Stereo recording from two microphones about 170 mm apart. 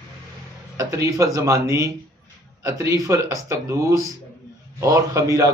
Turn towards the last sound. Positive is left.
turn(degrees=-20)  # may be behind; listen again after turning